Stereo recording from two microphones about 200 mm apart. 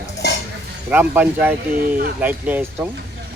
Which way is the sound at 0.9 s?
10° right (ahead or behind).